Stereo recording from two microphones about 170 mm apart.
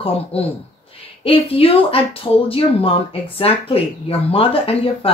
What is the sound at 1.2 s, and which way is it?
Speech, 35° left (ahead or behind).